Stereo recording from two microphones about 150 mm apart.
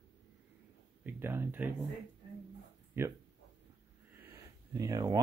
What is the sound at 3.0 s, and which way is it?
Speech, 15° right (ahead or behind).